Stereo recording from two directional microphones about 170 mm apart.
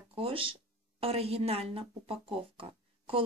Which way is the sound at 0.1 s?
35° right (ahead or behind).